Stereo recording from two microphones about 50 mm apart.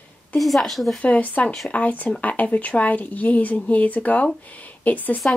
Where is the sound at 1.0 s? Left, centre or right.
Left.